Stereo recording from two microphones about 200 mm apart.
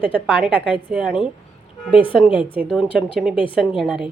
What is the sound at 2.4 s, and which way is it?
Speech, 5° right (ahead or behind).